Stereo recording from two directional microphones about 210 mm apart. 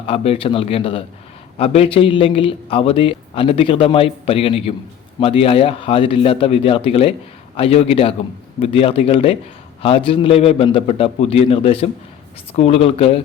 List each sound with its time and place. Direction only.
0.0 s speech: 30° left (ahead or behind)